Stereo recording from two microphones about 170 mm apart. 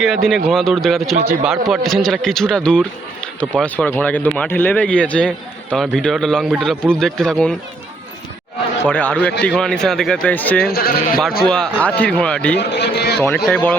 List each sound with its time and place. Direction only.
0.3 s speech: centre (ahead or behind)
8.8 s speech: 10° left (ahead or behind)
10.7 s speech: 65° left (ahead or behind)
11.4 s speech: 5° left (ahead or behind)
12.5 s a man's voice: 80° left
13.2 s speech: 10° left (ahead or behind)